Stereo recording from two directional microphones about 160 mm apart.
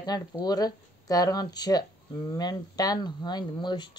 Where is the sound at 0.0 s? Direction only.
25° left (ahead or behind).